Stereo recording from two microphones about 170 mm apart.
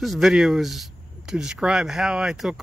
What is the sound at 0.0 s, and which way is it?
Speech, centre (ahead or behind).